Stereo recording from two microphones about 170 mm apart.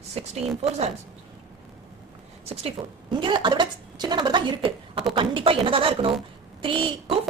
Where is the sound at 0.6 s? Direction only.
40° right (ahead or behind).